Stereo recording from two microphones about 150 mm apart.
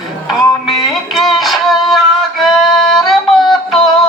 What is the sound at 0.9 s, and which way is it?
Music, centre (ahead or behind).